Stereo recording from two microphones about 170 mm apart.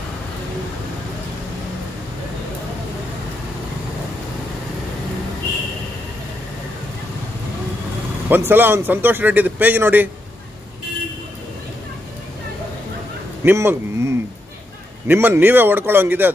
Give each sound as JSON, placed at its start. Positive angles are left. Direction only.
{"t": 8.3, "sound": "speech", "side_deg": -10}
{"t": 13.4, "sound": "speech", "side_deg": -15}